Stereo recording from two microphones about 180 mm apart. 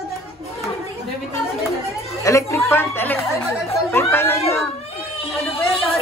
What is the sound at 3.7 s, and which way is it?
Chatter, 15° left (ahead or behind).